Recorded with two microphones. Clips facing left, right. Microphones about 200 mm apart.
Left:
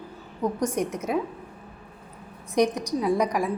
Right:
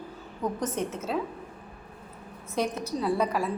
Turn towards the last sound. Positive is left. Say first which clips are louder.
# left 3 dB
turn(degrees=15)  # may be behind; listen again after turning